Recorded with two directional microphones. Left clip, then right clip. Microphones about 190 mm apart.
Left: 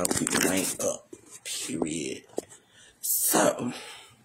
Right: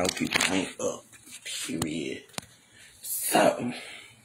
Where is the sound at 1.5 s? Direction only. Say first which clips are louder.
Left 1 dB; 20° left (ahead or behind).